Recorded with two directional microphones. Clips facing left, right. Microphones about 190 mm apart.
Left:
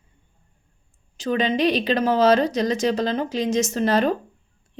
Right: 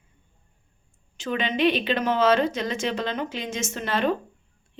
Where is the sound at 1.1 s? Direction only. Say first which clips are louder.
Left 5 dB; 40° left (ahead or behind).